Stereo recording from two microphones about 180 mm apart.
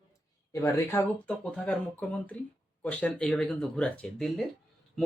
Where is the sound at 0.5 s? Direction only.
15° left (ahead or behind).